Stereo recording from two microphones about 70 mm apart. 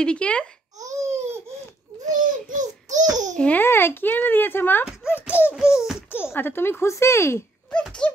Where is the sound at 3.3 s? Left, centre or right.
Centre.